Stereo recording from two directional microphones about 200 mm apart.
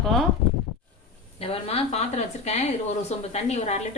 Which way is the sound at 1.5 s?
30° left (ahead or behind).